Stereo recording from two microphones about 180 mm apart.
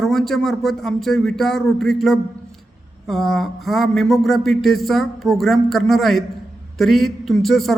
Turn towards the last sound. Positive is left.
turn(degrees=0)  # may be behind; listen again after turning